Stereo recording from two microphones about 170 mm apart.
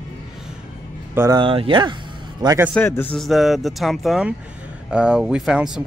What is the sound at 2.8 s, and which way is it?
Speech, 15° left (ahead or behind).